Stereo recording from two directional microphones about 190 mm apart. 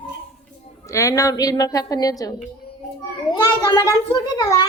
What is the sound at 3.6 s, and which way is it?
A child's voice, 20° left (ahead or behind).